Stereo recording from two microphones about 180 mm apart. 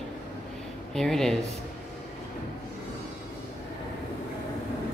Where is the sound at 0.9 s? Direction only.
Centre (ahead or behind).